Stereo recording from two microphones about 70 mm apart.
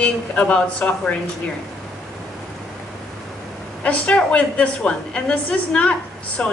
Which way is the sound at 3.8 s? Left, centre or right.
Centre.